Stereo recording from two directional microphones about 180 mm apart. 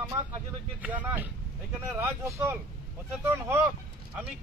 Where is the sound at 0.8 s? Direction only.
10° right (ahead or behind).